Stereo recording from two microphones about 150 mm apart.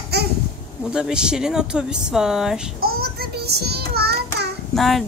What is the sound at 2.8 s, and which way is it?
Child singing, 90° right.